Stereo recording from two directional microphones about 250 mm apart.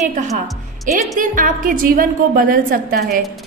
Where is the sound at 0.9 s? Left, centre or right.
Right.